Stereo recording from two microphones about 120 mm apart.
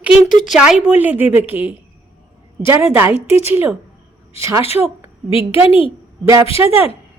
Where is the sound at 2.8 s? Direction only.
20° right (ahead or behind).